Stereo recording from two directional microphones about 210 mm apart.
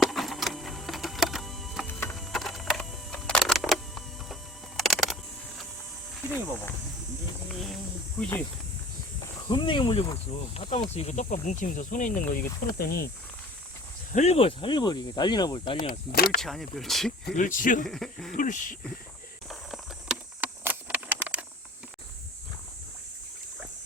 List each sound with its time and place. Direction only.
0.0 s printer: centre (ahead or behind)
2.0 s a sound: 5° left (ahead or behind)
7.4 s a sound: centre (ahead or behind)
9.5 s speech: 25° left (ahead or behind); by 13.1 s 45° left (ahead or behind)
14.1 s speech: 30° left (ahead or behind)
15.8 s speech: 45° left (ahead or behind)
16.4 s speech: centre (ahead or behind)
17.3 s speech: 40° left (ahead or behind)
17.8 s speech: centre (ahead or behind)
18.3 s speech: 40° left (ahead or behind)
19.5 s a sound: centre (ahead or behind)